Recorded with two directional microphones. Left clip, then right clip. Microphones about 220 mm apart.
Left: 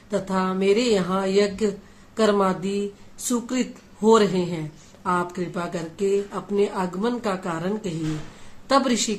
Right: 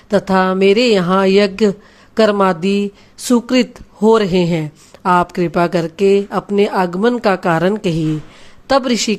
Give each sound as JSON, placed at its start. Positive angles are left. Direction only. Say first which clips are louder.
{"t": 0.1, "sound": "a woman's voice", "louder": "right 11 dB", "side_deg": -40}